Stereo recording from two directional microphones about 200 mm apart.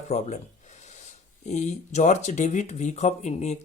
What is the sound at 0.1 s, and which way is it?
Speech, 30° left (ahead or behind).